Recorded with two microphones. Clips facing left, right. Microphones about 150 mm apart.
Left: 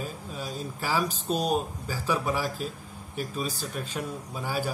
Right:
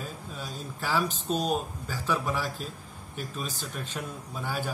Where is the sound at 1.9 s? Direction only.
10° left (ahead or behind).